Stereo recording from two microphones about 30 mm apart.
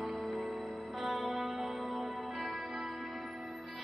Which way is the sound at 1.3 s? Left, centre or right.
Centre.